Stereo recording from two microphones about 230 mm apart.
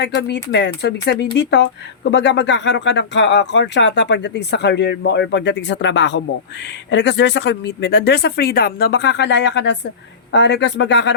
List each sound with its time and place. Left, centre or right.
0.0 s speech: left